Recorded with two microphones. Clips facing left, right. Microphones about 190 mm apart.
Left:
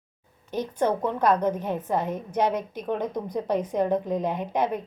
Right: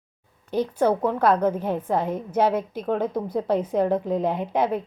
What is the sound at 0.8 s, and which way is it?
A woman's voice, 10° right (ahead or behind).